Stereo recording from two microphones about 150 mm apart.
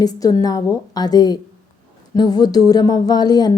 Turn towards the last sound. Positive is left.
turn(degrees=25)  # may be behind; listen again after turning